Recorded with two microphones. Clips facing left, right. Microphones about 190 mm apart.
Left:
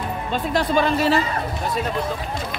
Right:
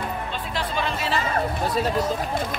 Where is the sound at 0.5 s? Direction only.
45° left (ahead or behind).